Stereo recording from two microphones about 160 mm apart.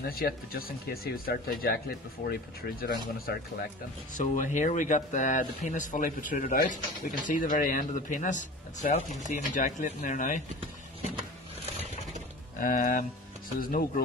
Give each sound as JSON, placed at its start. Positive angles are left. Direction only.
{"t": 0.0, "sound": "speech", "side_deg": 70}
{"t": 2.2, "sound": "speech", "side_deg": 80}
{"t": 4.1, "sound": "speech", "side_deg": 50}
{"t": 12.5, "sound": "speech", "side_deg": 60}